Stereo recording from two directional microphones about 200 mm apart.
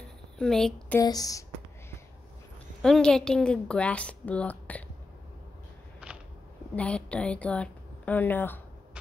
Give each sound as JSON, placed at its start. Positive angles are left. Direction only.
{"t": 0.4, "sound": "a woman's voice", "side_deg": 0}
{"t": 1.0, "sound": "speech", "side_deg": 20}
{"t": 2.8, "sound": "a woman's voice", "side_deg": 5}
{"t": 6.7, "sound": "a woman's voice", "side_deg": 5}